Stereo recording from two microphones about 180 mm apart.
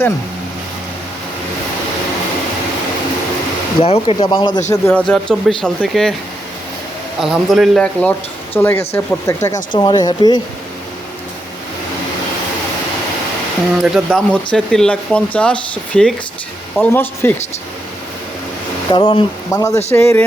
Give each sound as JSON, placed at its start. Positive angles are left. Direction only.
{"t": 3.8, "sound": "speech", "side_deg": 30}
{"t": 4.7, "sound": "speech", "side_deg": 10}
{"t": 7.2, "sound": "speech", "side_deg": 0}
{"t": 13.8, "sound": "speech", "side_deg": 0}
{"t": 18.9, "sound": "speech", "side_deg": 30}
{"t": 19.5, "sound": "speech", "side_deg": 15}